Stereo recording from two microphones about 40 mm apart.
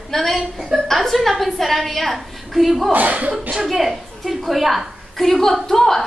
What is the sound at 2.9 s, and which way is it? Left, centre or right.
Speech, right.